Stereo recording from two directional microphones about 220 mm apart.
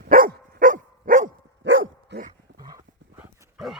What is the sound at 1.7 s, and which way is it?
Dog, 60° right (ahead or behind).